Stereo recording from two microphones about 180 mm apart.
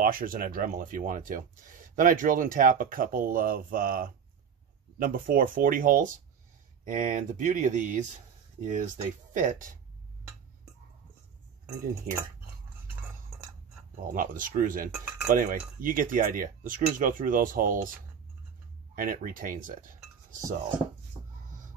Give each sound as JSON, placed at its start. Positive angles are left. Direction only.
{"t": 0.0, "sound": "speech", "side_deg": -50}
{"t": 12.1, "sound": "speech", "side_deg": -50}
{"t": 14.1, "sound": "speech", "side_deg": -50}
{"t": 18.9, "sound": "speech", "side_deg": -50}